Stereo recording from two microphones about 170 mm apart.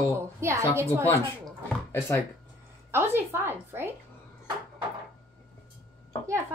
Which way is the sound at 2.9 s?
15° right (ahead or behind).